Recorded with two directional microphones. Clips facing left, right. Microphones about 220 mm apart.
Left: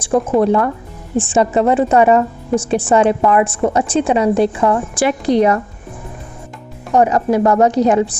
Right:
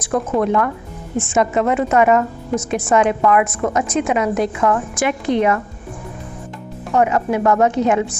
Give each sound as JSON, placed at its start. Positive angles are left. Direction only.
{"t": 0.0, "sound": "a woman's voice", "side_deg": 30}
{"t": 6.9, "sound": "a woman's voice", "side_deg": 35}